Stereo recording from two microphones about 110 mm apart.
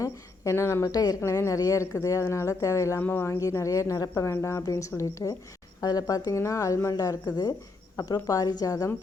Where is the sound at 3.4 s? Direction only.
30° left (ahead or behind).